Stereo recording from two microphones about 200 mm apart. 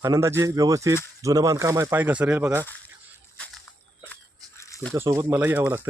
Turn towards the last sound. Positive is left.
turn(degrees=-10)  # may be behind; listen again after turning